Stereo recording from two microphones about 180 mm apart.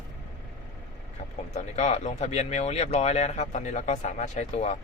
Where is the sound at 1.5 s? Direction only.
40° left (ahead or behind).